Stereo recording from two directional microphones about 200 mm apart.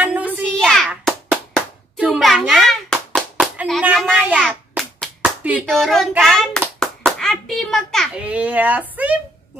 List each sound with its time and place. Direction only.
0.0 s a sound: 5° right (ahead or behind)
0.5 s hands: centre (ahead or behind)
7.1 s a child's voice: centre (ahead or behind)